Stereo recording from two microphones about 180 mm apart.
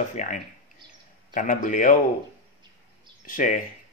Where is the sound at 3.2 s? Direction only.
45° left (ahead or behind).